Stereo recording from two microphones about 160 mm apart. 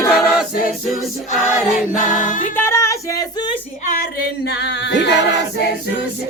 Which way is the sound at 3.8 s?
60° left (ahead or behind).